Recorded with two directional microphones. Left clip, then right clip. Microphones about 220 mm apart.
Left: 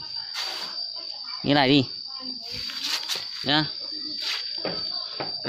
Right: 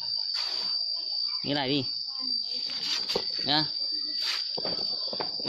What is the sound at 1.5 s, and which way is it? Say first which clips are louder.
Speech: left 12 dB; 20° left (ahead or behind).